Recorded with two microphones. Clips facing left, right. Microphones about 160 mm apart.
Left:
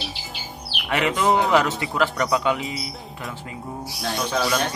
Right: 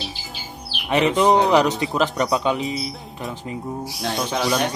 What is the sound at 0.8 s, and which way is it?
A man's voice, 20° right (ahead or behind).